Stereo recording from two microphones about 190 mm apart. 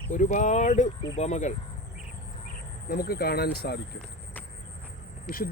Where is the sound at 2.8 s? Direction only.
50° left (ahead or behind).